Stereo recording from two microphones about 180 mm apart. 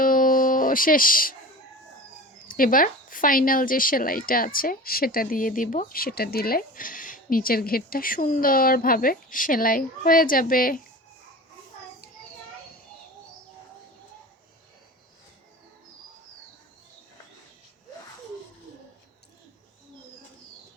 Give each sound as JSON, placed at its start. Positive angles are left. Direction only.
{"t": 0.0, "sound": "music", "side_deg": 50}
{"t": 2.5, "sound": "speech", "side_deg": 50}